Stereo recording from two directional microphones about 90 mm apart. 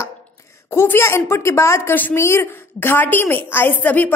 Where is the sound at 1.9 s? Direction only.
20° left (ahead or behind).